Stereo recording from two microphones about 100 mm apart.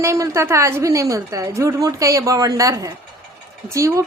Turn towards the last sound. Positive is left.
turn(degrees=-30)  # may be behind; listen again after turning